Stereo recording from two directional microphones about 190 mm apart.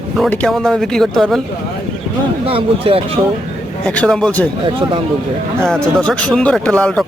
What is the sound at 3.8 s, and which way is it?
Speech, 5° left (ahead or behind).